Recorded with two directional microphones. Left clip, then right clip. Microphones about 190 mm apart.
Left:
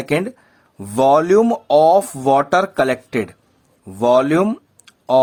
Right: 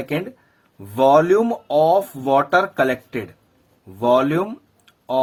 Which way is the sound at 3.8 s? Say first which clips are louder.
Left 3 dB; 50° left (ahead or behind).